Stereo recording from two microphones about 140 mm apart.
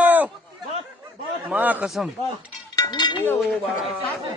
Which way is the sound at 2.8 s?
30° left (ahead or behind).